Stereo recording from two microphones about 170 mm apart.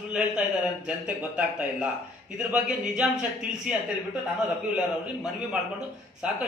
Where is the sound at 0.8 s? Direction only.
5° right (ahead or behind).